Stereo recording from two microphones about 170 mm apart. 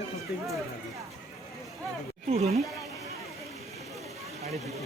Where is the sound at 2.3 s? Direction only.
40° right (ahead or behind).